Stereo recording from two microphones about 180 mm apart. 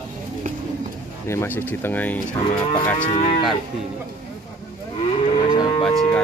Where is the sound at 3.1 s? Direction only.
40° left (ahead or behind).